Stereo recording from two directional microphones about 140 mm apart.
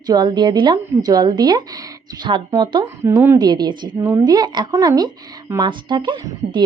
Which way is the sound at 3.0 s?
20° right (ahead or behind).